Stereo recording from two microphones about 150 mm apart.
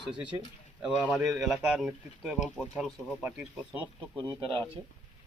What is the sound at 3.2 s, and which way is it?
Speech, 10° right (ahead or behind).